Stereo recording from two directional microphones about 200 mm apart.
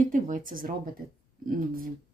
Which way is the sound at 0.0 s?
40° right (ahead or behind).